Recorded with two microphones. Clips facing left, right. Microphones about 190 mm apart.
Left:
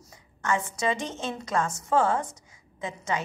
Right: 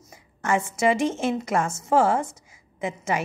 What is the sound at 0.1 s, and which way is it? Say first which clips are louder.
A woman's voice: right 4 dB; 25° right (ahead or behind).